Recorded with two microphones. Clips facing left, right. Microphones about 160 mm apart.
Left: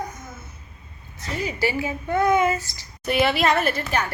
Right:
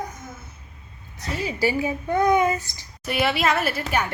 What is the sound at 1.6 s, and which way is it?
A woman's voice, 15° right (ahead or behind).